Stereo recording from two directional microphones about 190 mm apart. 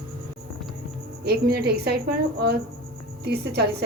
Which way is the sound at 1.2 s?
55° right (ahead or behind).